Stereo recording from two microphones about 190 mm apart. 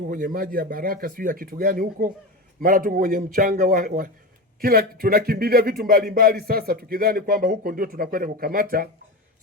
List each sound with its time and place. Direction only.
0.1 s a man's voice: 50° right (ahead or behind)